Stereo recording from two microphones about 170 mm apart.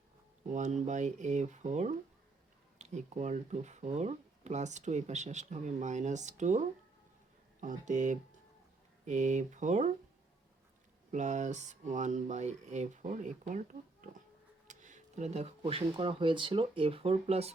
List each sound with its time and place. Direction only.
0.5 s speech: 45° right (ahead or behind)
11.1 s speech: 45° right (ahead or behind)
14.7 s speech: 45° right (ahead or behind)